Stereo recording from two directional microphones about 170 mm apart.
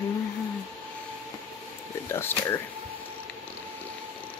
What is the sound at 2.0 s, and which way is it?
Speech, 15° left (ahead or behind).